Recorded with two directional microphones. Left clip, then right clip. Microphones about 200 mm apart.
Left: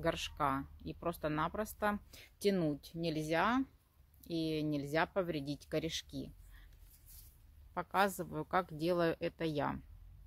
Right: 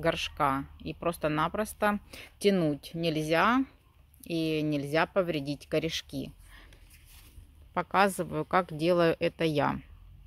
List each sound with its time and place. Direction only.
0.0 s speech: 15° right (ahead or behind)
7.7 s a woman's voice: 20° right (ahead or behind)